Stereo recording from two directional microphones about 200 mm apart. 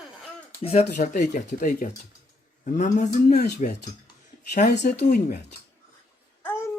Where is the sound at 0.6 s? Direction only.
30° left (ahead or behind); by 1.9 s 50° left (ahead or behind).